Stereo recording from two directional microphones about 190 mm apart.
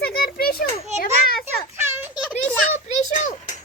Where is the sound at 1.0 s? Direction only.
50° left (ahead or behind).